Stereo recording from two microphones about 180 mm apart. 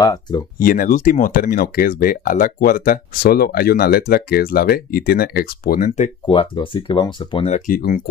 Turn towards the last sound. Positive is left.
turn(degrees=50)  # may be behind; listen again after turning